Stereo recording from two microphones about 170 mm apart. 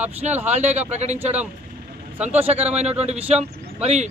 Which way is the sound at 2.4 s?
10° right (ahead or behind).